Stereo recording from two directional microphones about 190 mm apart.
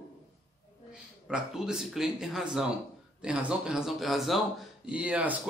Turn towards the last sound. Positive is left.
turn(degrees=-5)  # may be behind; listen again after turning